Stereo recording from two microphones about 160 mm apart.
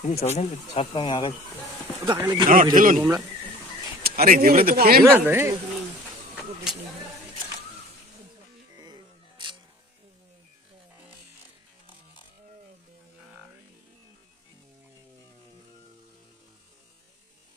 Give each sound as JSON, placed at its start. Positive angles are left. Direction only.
{"t": 0.0, "sound": "speech", "side_deg": 40}
{"t": 2.0, "sound": "speech", "side_deg": -25}
{"t": 2.7, "sound": "speech", "side_deg": -60}
{"t": 4.0, "sound": "speech", "side_deg": -60}
{"t": 5.0, "sound": "speech", "side_deg": -10}
{"t": 8.7, "sound": "music", "side_deg": -25}
{"t": 9.4, "sound": "single-lens reflex camera", "side_deg": -30}